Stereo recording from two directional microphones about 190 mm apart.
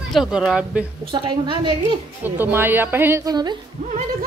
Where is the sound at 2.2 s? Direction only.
10° right (ahead or behind).